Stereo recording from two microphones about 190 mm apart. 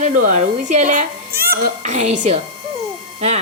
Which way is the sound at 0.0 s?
40° right (ahead or behind).